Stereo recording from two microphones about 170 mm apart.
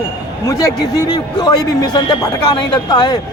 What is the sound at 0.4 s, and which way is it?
A man's voice, 20° left (ahead or behind).